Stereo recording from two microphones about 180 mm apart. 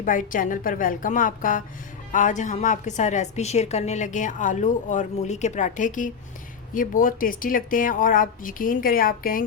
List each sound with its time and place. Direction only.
0.0 s a woman's voice: 45° left (ahead or behind)